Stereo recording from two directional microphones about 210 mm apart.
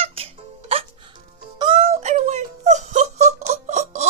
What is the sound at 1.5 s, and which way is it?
Synthetic singing, 25° right (ahead or behind).